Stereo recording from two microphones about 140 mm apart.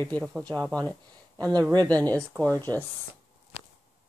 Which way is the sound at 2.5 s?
15° left (ahead or behind).